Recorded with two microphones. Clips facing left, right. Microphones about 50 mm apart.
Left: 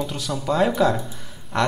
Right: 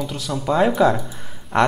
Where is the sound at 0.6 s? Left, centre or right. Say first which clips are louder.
Right 3 dB; centre.